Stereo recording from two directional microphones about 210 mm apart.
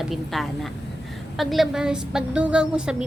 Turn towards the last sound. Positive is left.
turn(degrees=-5)  # may be behind; listen again after turning